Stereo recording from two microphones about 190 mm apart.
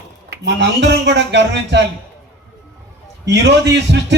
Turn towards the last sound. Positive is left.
turn(degrees=-65)  # may be behind; listen again after turning